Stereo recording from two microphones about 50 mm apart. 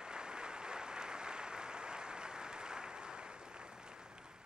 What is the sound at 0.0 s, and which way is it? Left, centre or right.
Applause, centre.